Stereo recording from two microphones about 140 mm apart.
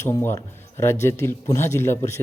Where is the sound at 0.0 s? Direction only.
20° left (ahead or behind).